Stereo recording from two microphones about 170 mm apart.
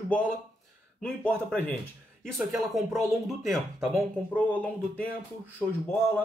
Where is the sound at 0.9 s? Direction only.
10° left (ahead or behind).